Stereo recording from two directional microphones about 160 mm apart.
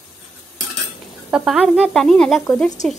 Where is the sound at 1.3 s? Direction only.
5° right (ahead or behind).